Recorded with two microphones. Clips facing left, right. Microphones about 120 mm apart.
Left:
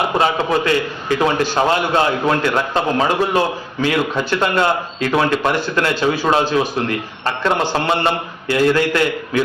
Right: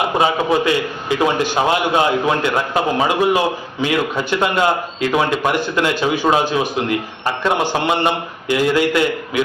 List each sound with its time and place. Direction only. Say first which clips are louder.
0.2 s a man's voice: right 2 dB; 15° right (ahead or behind)